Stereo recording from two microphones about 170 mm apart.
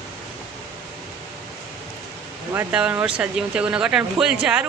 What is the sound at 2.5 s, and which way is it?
Speech, 10° right (ahead or behind).